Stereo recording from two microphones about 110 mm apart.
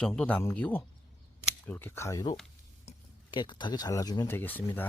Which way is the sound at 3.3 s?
45° left (ahead or behind).